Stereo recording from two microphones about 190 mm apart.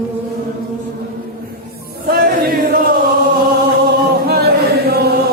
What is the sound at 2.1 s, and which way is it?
Chant, 50° right (ahead or behind).